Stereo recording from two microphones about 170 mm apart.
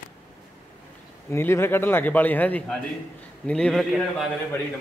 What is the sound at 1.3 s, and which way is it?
A man's voice, 15° left (ahead or behind).